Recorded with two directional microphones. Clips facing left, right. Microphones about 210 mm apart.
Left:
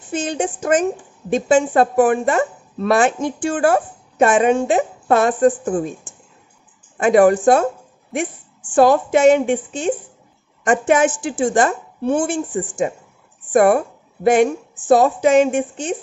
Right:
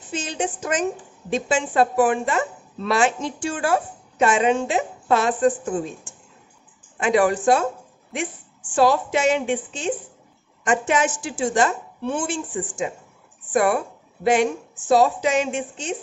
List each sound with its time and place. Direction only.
0.1 s a woman's voice: 50° left (ahead or behind)
7.0 s a woman's voice: 50° left (ahead or behind)
8.7 s a woman's voice: 50° left (ahead or behind)